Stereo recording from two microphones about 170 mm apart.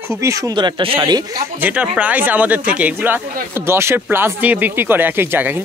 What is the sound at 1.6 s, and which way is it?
Speech, 5° right (ahead or behind).